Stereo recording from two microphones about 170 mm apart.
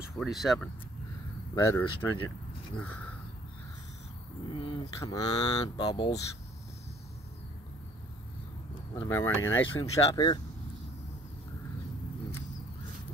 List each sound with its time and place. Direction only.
0.0 s speech: centre (ahead or behind)
1.5 s speech: 20° left (ahead or behind)
4.5 s speech: 30° left (ahead or behind)
4.9 s speech: 20° left (ahead or behind)
9.1 s speech: 15° left (ahead or behind)